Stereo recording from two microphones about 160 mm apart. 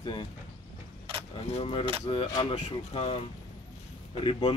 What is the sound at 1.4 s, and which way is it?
Speech, 40° left (ahead or behind).